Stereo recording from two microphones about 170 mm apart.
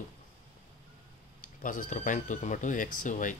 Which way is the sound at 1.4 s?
50° left (ahead or behind).